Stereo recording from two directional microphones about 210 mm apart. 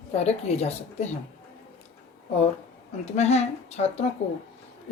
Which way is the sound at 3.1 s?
30° left (ahead or behind).